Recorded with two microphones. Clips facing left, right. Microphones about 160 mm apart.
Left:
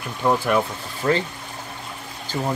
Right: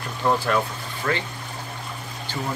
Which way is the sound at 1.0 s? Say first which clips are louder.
Left 5 dB; 30° left (ahead or behind).